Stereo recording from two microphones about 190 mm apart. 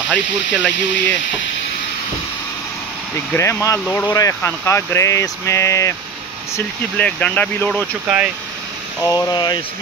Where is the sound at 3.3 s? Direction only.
15° left (ahead or behind).